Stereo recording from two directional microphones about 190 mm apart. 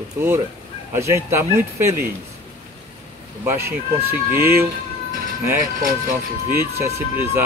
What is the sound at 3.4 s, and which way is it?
Speech, 10° right (ahead or behind).